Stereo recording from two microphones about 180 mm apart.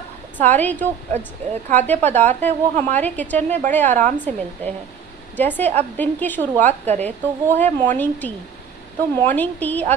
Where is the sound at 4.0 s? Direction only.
45° right (ahead or behind).